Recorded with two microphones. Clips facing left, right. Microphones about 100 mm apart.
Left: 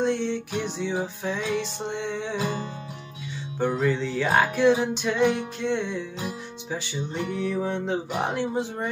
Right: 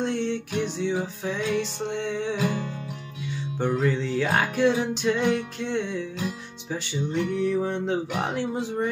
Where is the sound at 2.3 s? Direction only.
25° left (ahead or behind).